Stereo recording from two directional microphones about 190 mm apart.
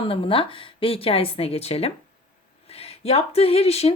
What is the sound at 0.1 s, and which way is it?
Speech, 30° left (ahead or behind).